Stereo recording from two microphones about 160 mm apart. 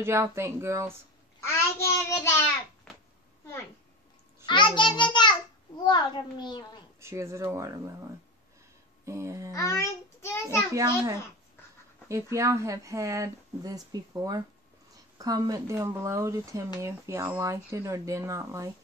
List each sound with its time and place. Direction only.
0.0 s speech: 15° right (ahead or behind)
1.4 s a child's voice: 15° left (ahead or behind)
4.5 s a child's voice: 30° left (ahead or behind)
7.0 s speech: 15° right (ahead or behind)
9.0 s speech: 15° right (ahead or behind)
9.5 s a child's voice: 20° left (ahead or behind)
10.7 s speech: 20° right (ahead or behind)